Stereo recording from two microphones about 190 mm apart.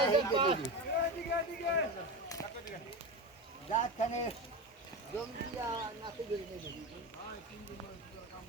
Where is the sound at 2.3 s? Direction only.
15° left (ahead or behind).